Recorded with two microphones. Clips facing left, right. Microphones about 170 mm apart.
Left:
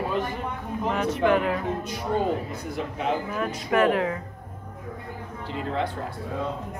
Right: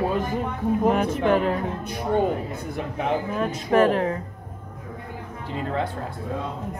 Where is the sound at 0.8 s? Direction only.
50° right (ahead or behind).